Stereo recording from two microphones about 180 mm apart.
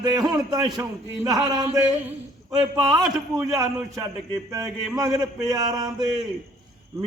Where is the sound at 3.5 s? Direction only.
20° right (ahead or behind).